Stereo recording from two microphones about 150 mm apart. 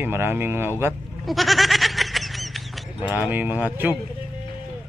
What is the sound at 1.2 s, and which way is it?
Goat, centre (ahead or behind).